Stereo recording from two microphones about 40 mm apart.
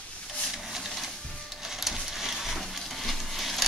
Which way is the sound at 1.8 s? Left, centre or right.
Centre.